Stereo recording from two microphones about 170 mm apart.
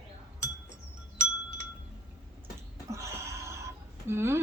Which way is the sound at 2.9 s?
15° right (ahead or behind).